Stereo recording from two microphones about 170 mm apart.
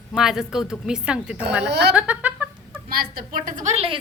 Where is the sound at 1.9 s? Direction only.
10° right (ahead or behind).